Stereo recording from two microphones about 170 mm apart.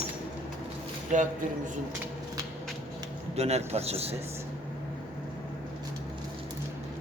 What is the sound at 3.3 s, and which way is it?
Speech, 40° right (ahead or behind).